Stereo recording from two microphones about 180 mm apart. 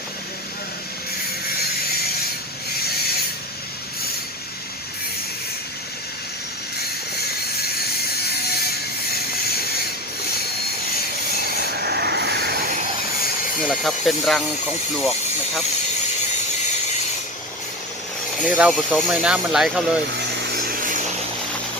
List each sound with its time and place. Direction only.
8.1 s mechanisms: 60° left (ahead or behind)
11.8 s vehicle: 60° right (ahead or behind)
13.7 s speech: centre (ahead or behind)
18.4 s speech: 5° right (ahead or behind)
20.1 s a sound: 65° right (ahead or behind)